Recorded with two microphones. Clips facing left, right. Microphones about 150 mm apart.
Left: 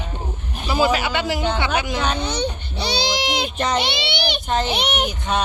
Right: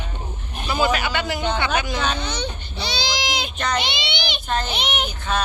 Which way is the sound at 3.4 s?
25° left (ahead or behind).